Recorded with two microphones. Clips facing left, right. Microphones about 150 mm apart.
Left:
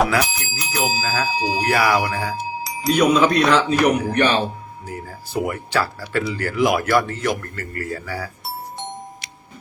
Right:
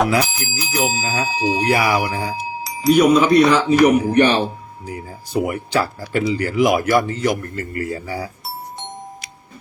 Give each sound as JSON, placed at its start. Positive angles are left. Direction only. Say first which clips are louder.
{"t": 0.1, "sound": "speech", "louder": "right 2 dB", "side_deg": -20}
{"t": 0.6, "sound": "speech", "louder": "right 2 dB", "side_deg": 0}
{"t": 1.0, "sound": "speech", "louder": "right 1 dB", "side_deg": -20}
{"t": 2.6, "sound": "speech", "louder": "right 4 dB", "side_deg": 0}
{"t": 4.0, "sound": "speech", "louder": "right 4 dB", "side_deg": -15}